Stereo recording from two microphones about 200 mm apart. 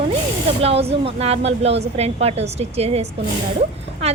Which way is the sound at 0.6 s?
30° right (ahead or behind).